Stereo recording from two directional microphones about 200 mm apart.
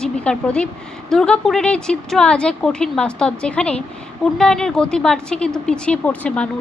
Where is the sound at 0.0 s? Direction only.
5° left (ahead or behind).